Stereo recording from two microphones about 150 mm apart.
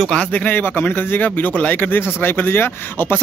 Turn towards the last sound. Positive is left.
turn(degrees=15)  # may be behind; listen again after turning